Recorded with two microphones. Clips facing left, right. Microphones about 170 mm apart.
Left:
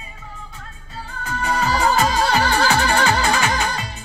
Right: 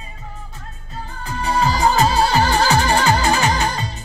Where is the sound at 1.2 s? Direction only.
35° right (ahead or behind).